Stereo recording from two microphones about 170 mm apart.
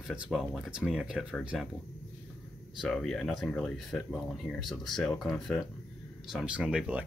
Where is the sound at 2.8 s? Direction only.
5° left (ahead or behind).